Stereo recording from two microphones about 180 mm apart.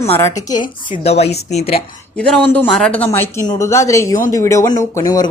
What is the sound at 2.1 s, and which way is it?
A woman's voice, 5° left (ahead or behind).